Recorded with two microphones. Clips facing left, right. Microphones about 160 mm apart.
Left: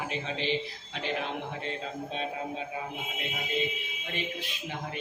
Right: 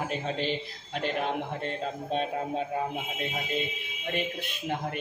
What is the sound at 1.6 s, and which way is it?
Speech, 50° right (ahead or behind).